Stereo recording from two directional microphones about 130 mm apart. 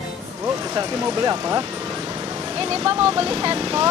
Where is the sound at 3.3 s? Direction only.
50° right (ahead or behind).